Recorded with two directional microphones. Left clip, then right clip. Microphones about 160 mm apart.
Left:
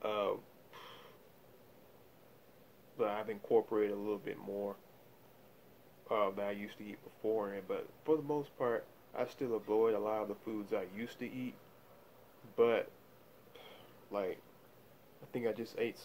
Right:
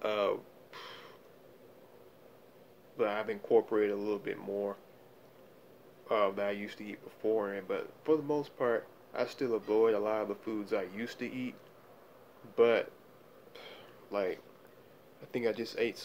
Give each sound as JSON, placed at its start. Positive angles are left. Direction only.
{"t": 0.0, "sound": "a sound", "side_deg": 5}
{"t": 3.0, "sound": "speech", "side_deg": 5}
{"t": 6.0, "sound": "speech", "side_deg": 5}
{"t": 12.5, "sound": "speech", "side_deg": 5}
{"t": 13.5, "sound": "a sound", "side_deg": 5}
{"t": 15.3, "sound": "speech", "side_deg": 10}